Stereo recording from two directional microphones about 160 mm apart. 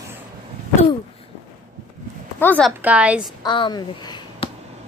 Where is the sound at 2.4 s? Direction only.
10° left (ahead or behind).